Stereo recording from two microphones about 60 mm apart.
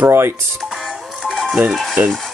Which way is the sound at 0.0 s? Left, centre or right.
Right.